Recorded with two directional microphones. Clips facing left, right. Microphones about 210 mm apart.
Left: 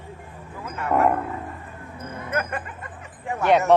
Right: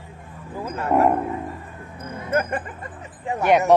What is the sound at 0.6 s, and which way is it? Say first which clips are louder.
Roaring cats: right 4 dB; 30° right (ahead or behind).